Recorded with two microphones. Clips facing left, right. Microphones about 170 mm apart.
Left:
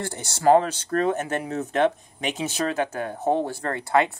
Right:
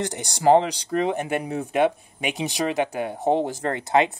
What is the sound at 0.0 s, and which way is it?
Speech, 15° right (ahead or behind).